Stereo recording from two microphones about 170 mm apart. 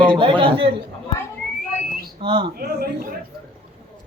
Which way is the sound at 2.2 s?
30° right (ahead or behind).